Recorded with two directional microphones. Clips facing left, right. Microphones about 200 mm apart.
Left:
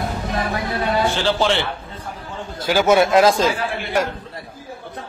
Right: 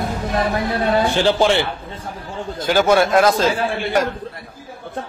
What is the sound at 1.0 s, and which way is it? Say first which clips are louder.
Speech: right 3 dB; 15° right (ahead or behind).